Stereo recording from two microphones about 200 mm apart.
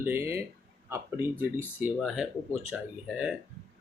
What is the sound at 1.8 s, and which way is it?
Speech, centre (ahead or behind).